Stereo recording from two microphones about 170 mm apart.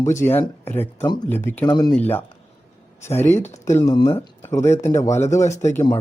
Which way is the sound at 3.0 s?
15° left (ahead or behind).